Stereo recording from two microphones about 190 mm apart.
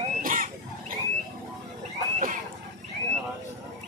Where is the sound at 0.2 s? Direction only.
45° right (ahead or behind).